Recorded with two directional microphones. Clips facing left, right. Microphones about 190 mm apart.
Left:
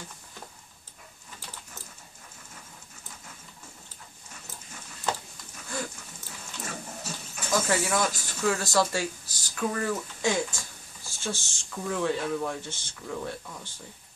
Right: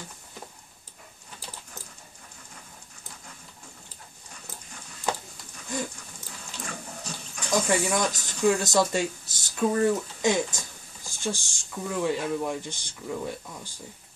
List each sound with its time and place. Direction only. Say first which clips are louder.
5.7 s dog: right 3 dB; 20° right (ahead or behind)
6.6 s water: even; 5° left (ahead or behind)
7.5 s speech: right 2 dB; 15° right (ahead or behind)